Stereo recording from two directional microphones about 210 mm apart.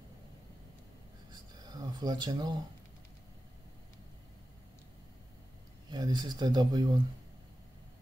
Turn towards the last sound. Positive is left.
turn(degrees=-20)  # may be behind; listen again after turning